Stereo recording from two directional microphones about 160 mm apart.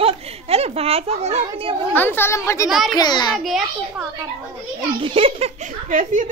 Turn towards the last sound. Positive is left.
turn(degrees=-50)  # may be behind; listen again after turning